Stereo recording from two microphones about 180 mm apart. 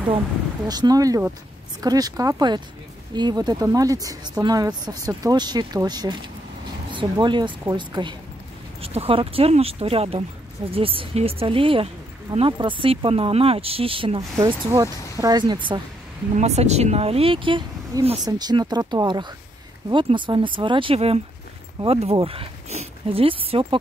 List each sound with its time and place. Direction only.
0.7 s speech: 20° right (ahead or behind)
14.4 s speech: 20° right (ahead or behind)
16.3 s speech: 40° right (ahead or behind)